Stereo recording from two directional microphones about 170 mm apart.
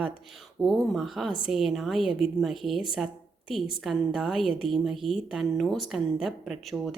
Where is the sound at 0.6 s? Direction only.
Centre (ahead or behind).